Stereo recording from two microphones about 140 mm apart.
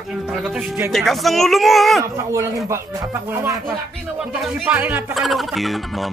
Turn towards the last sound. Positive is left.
turn(degrees=0)  # may be behind; listen again after turning